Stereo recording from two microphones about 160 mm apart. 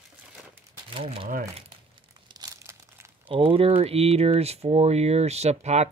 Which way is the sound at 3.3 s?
35° right (ahead or behind).